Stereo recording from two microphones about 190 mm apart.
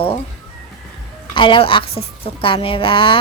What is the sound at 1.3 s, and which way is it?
A woman's voice, 25° left (ahead or behind).